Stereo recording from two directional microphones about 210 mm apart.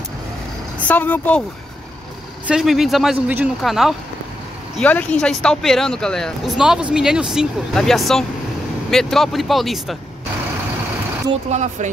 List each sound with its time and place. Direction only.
0.7 s speech: 10° left (ahead or behind)
2.4 s speech: centre (ahead or behind)
11.5 s speech: 35° right (ahead or behind)